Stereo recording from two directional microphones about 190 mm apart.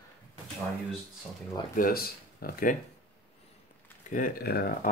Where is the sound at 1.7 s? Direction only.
50° left (ahead or behind).